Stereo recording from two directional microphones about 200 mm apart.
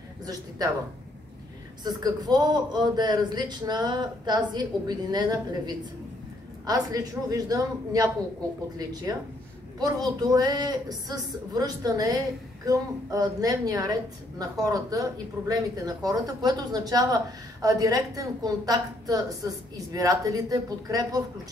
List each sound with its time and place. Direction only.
0.2 s speech: 20° right (ahead or behind)
1.9 s speech: 20° right (ahead or behind)